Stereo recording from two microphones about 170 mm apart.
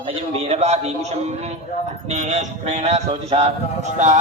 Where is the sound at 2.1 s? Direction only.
45° right (ahead or behind).